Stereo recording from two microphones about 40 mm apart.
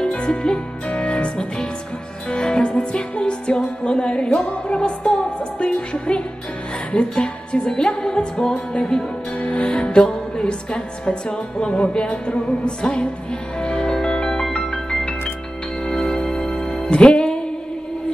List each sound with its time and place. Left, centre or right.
0.0 s music: left